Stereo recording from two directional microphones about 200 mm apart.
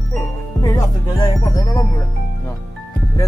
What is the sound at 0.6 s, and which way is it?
Speech, 20° left (ahead or behind).